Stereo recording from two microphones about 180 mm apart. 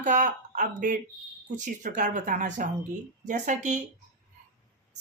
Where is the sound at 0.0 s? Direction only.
45° right (ahead or behind).